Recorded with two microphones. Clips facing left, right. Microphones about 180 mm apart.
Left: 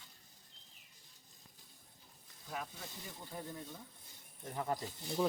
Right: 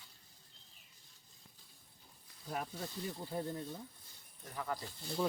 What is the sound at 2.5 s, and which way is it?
Speech, 45° right (ahead or behind).